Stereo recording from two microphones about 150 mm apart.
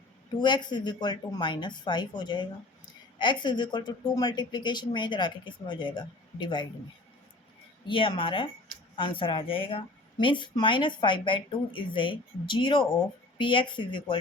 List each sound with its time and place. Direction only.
0.3 s speech: 30° left (ahead or behind)
7.9 s speech: 35° left (ahead or behind)